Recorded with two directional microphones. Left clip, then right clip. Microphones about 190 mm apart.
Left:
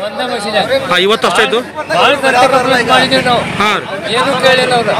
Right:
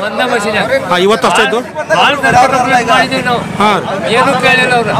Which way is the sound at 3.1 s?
10° right (ahead or behind).